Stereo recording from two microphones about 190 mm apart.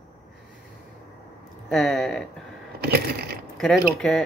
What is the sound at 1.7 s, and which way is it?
Speech, centre (ahead or behind).